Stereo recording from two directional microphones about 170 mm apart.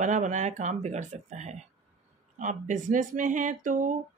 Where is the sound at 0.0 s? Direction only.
45° right (ahead or behind).